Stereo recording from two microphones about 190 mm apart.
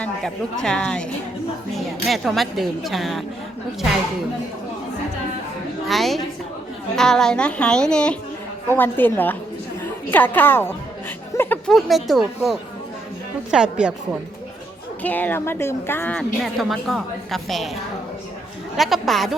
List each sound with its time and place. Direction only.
0.0 s speech: 5° left (ahead or behind)
5.9 s a woman's voice: centre (ahead or behind)
15.0 s a woman's voice: 10° left (ahead or behind)
18.8 s speech: centre (ahead or behind)